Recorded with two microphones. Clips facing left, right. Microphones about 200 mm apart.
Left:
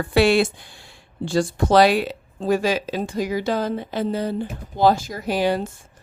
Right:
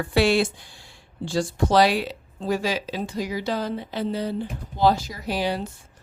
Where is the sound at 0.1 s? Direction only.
60° left (ahead or behind).